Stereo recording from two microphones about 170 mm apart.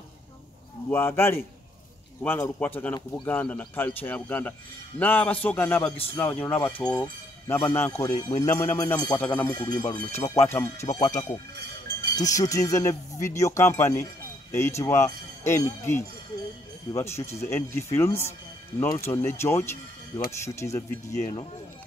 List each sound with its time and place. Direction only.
0.8 s speech: 15° left (ahead or behind)